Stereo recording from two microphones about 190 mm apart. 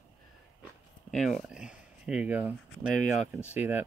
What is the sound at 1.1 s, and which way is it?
Speech, centre (ahead or behind).